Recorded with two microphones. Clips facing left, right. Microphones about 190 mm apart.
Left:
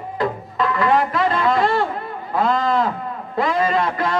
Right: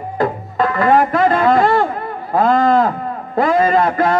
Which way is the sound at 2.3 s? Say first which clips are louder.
Right 6 dB; 50° right (ahead or behind).